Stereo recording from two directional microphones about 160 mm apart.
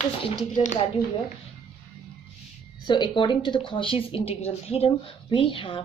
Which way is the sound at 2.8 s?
30° left (ahead or behind).